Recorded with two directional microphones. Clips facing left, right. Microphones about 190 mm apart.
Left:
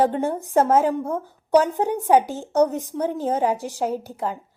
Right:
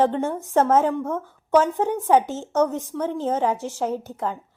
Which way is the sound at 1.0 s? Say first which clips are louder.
Even; 30° left (ahead or behind).